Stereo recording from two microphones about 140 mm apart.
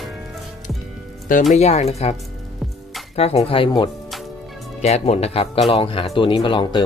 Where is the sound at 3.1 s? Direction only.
45° left (ahead or behind).